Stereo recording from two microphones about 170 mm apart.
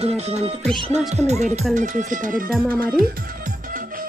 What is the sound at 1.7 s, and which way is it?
Speech, 50° right (ahead or behind).